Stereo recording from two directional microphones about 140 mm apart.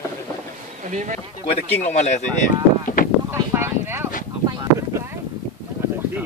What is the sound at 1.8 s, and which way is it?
Speech, 55° left (ahead or behind).